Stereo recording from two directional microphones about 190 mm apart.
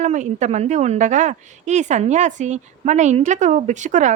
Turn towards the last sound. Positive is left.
turn(degrees=-40)  # may be behind; listen again after turning